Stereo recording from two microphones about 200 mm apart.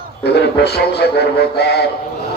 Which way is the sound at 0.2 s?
55° left (ahead or behind).